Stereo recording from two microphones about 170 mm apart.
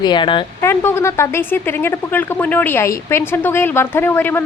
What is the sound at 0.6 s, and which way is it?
A woman's voice, 15° left (ahead or behind).